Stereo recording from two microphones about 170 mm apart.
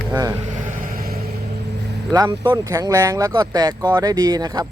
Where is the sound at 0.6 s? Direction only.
55° right (ahead or behind).